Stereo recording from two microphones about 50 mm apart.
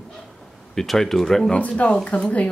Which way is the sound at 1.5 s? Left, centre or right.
Left.